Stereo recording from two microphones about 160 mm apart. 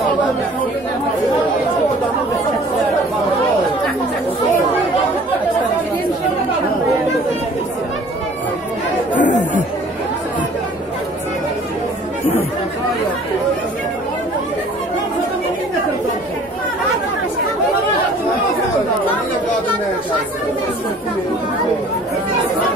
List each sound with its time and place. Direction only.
9.2 s chatter: 90° left